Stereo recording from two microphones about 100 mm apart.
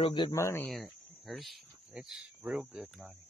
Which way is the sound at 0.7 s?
Centre (ahead or behind).